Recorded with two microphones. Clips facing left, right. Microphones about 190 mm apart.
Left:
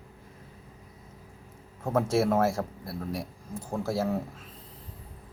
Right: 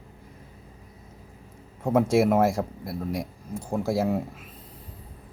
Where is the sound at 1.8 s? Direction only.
15° right (ahead or behind).